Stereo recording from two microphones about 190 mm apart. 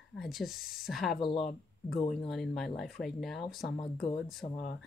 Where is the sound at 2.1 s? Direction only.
Centre (ahead or behind).